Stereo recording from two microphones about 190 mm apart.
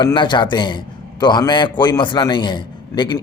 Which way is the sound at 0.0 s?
25° left (ahead or behind).